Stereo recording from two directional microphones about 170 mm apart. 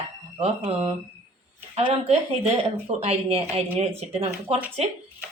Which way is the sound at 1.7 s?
40° right (ahead or behind).